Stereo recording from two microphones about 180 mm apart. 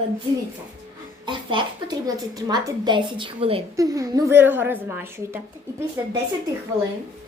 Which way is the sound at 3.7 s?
20° right (ahead or behind).